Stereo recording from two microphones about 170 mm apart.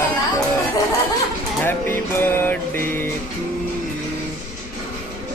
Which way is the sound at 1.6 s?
10° left (ahead or behind).